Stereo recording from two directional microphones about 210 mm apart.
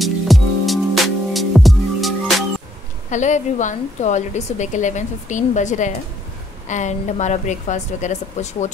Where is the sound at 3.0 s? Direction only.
35° left (ahead or behind).